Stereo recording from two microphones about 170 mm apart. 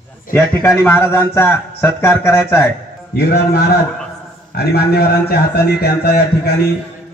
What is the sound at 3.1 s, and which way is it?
A man's voice, 70° left (ahead or behind).